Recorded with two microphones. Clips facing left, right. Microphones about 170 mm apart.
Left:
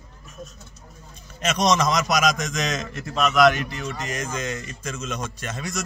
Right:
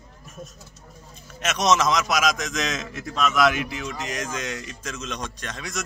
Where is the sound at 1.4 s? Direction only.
5° right (ahead or behind).